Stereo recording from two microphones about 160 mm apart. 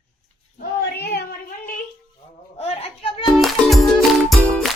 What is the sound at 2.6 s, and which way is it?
Speech, 35° left (ahead or behind).